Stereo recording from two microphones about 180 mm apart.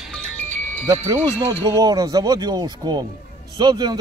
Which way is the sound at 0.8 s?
15° right (ahead or behind).